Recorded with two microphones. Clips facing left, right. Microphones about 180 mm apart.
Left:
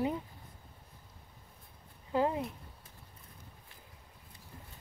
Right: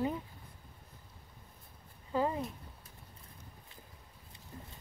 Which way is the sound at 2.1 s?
10° left (ahead or behind).